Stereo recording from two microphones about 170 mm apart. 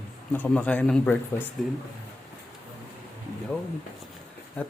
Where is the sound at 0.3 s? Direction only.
10° left (ahead or behind).